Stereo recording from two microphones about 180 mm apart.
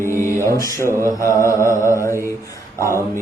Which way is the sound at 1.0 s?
15° right (ahead or behind).